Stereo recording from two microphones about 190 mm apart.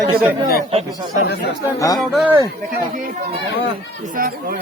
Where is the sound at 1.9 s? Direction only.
5° right (ahead or behind).